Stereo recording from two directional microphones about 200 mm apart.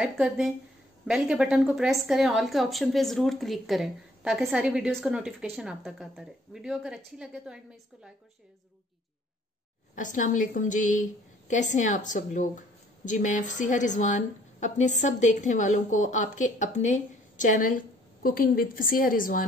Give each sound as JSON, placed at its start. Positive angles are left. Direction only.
{"t": 0.0, "sound": "a woman's voice", "side_deg": -5}
{"t": 9.9, "sound": "a woman's voice", "side_deg": 40}